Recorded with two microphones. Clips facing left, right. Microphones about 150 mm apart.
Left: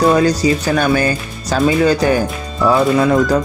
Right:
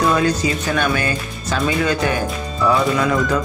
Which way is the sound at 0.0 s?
35° left (ahead or behind).